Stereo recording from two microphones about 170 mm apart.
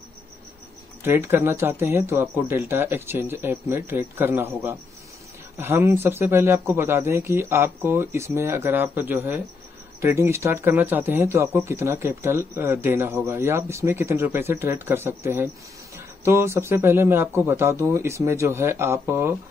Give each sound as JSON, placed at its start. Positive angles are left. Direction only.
{"t": 1.0, "sound": "speech", "side_deg": -15}